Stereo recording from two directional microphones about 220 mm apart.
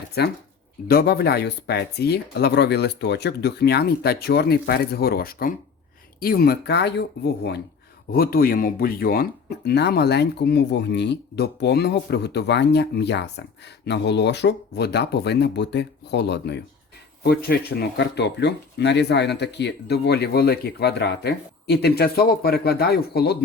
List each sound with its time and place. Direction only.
0.2 s speech: 50° left (ahead or behind)
8.1 s speech: 45° left (ahead or behind)